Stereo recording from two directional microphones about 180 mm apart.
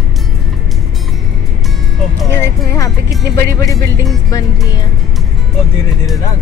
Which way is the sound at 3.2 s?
15° left (ahead or behind).